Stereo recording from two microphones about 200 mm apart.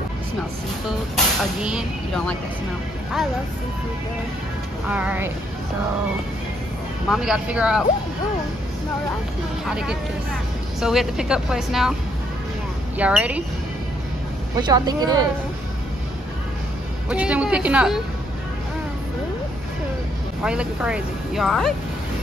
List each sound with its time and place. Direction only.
0.8 s speech: 5° right (ahead or behind)
4.8 s speech: 5° right (ahead or behind)
7.1 s speech: 5° right (ahead or behind)
9.7 s speech: 5° right (ahead or behind)
12.9 s speech: 5° right (ahead or behind)
14.6 s speech: 20° right (ahead or behind)
17.1 s speech: 5° right (ahead or behind)
20.4 s speech: 5° right (ahead or behind)